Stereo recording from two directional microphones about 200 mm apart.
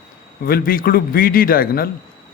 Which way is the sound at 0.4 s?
45° left (ahead or behind).